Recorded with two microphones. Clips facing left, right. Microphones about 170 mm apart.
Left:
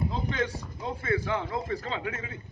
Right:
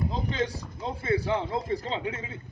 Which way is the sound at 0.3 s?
30° right (ahead or behind).